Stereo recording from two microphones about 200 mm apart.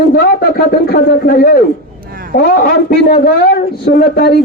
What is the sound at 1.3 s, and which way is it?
Speech, 50° left (ahead or behind).